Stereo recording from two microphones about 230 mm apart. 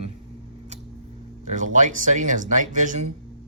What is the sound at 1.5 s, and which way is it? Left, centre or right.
Speech, right.